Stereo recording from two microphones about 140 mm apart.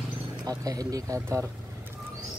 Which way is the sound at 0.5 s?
25° right (ahead or behind).